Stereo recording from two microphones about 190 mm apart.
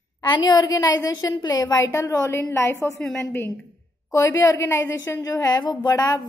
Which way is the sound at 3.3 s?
15° left (ahead or behind).